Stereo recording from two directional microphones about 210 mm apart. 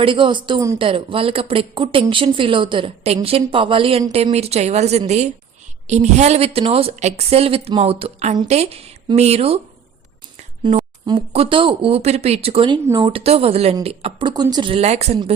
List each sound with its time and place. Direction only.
0.0 s speech: 25° right (ahead or behind)
10.6 s a woman's voice: 35° right (ahead or behind)